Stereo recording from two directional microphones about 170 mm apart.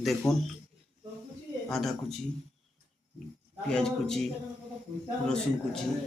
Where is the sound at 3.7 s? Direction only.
5° left (ahead or behind).